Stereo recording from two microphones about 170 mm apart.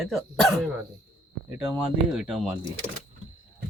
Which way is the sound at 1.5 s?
10° right (ahead or behind).